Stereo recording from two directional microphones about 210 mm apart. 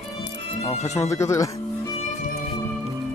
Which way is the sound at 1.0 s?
15° left (ahead or behind).